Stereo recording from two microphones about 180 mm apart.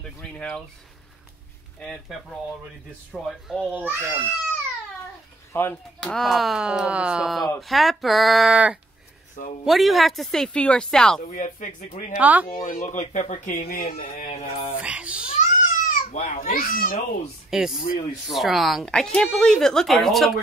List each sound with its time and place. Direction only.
0.2 s speech: 5° left (ahead or behind)
1.8 s speech: centre (ahead or behind)
5.5 s speech: 15° left (ahead or behind)
5.9 s speech: 5° left (ahead or behind)
11.3 s speech: 45° left (ahead or behind)
12.2 s speech: 10° right (ahead or behind)
12.4 s speech: 50° left (ahead or behind)
14.3 s mantra: 30° left (ahead or behind)
14.8 s speech: 5° right (ahead or behind)
15.3 s a sound: 50° left (ahead or behind)
17.5 s speech: 5° right (ahead or behind)